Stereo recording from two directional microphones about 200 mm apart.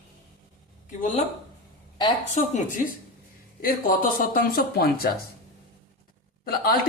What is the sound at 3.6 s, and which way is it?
Speech, 45° left (ahead or behind).